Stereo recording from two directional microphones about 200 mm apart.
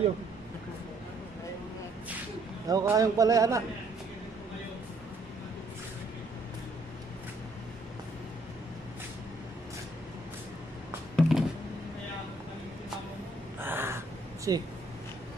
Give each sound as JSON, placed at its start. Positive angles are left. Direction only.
{"t": 2.7, "sound": "speech", "side_deg": -15}
{"t": 11.1, "sound": "a sound", "side_deg": 0}
{"t": 13.6, "sound": "crow", "side_deg": -10}